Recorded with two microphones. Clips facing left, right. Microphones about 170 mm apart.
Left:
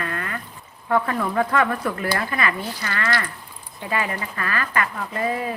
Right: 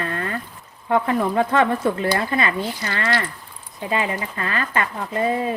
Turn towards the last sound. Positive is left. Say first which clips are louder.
# right 3 dB
turn(degrees=-25)  # may be behind; listen again after turning